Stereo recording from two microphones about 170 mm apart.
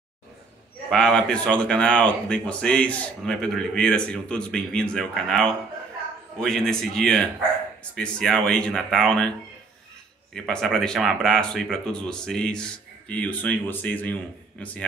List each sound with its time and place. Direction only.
0.8 s speech: 5° left (ahead or behind)
10.3 s speech: 5° left (ahead or behind)